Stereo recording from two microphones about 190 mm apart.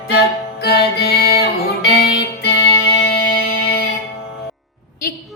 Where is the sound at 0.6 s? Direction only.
55° left (ahead or behind).